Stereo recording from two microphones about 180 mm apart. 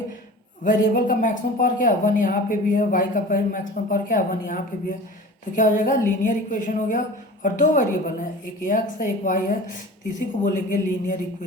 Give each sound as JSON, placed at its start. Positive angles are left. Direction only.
{"t": 0.6, "sound": "speech", "side_deg": 50}